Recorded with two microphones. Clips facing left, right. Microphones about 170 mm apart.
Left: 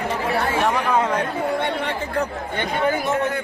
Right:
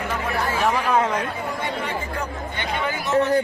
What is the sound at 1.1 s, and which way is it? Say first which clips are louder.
Speech: left 4 dB; 65° left (ahead or behind).